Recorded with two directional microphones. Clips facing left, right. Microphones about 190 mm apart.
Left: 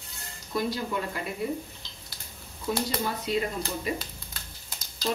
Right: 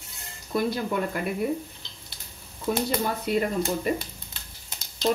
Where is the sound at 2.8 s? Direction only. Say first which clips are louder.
Right 3 dB; 55° right (ahead or behind).